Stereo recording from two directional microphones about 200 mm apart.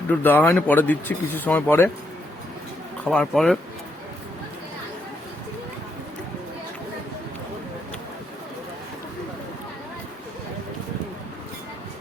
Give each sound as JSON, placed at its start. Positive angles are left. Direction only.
{"t": 0.1, "sound": "speech", "side_deg": 10}
{"t": 3.0, "sound": "speech", "side_deg": 5}